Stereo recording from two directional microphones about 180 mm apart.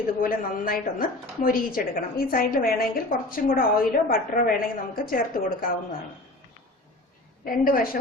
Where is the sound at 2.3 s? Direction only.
55° left (ahead or behind).